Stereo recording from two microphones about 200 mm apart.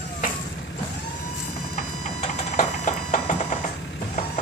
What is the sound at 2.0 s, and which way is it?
Music, 35° left (ahead or behind).